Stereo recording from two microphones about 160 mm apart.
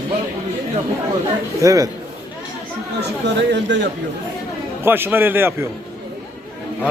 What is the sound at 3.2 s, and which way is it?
Speech, 90° right.